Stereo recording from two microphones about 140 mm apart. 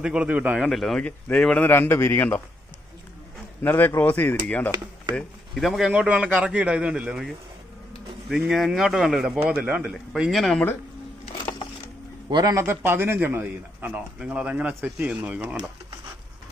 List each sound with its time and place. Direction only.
0.0 s a man's voice: 10° right (ahead or behind)
0.7 s a man's voice: centre (ahead or behind)
3.6 s a man's voice: 15° left (ahead or behind)
5.1 s a man's voice: centre (ahead or behind)
12.3 s speech: 30° right (ahead or behind)
12.6 s a man's voice: 15° right (ahead or behind)